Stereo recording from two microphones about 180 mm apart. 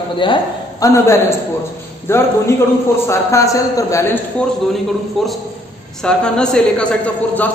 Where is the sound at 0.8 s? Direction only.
15° left (ahead or behind).